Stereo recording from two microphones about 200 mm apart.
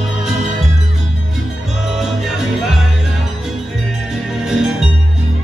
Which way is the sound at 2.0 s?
Centre (ahead or behind).